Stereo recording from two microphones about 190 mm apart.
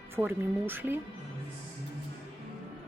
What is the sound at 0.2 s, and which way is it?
Speech, 10° right (ahead or behind).